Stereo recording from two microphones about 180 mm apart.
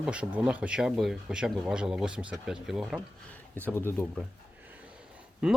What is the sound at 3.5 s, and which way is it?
Speech, 10° left (ahead or behind).